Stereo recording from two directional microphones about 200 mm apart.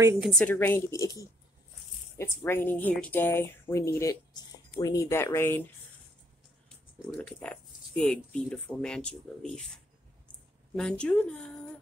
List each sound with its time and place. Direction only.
0.2 s speech: 5° left (ahead or behind)
7.2 s speech: 5° left (ahead or behind)
10.8 s speech: 5° left (ahead or behind)